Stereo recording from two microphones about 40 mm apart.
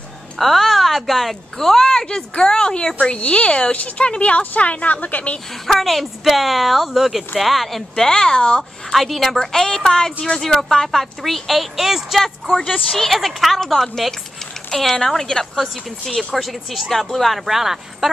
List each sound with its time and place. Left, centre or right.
0.4 s a woman's voice: centre
3.2 s a woman's voice: left
5.7 s speech: centre
7.9 s speech: centre
8.9 s a woman's voice: centre
12.9 s a woman's voice: centre